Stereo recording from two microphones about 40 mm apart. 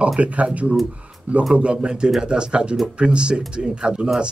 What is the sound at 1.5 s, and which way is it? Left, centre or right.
Speech, right.